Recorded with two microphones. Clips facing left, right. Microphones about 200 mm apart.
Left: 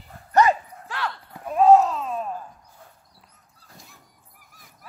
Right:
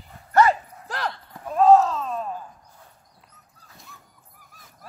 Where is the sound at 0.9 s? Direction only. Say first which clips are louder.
Right 1 dB; 40° right (ahead or behind).